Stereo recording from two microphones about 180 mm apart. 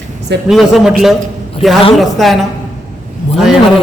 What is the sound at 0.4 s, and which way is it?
A man's voice, centre (ahead or behind).